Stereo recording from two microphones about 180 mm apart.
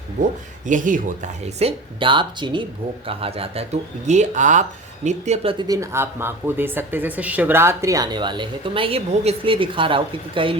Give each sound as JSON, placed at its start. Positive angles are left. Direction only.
{"t": 0.7, "sound": "speech", "side_deg": -45}